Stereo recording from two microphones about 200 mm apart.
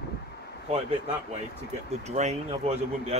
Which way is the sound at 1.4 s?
35° right (ahead or behind).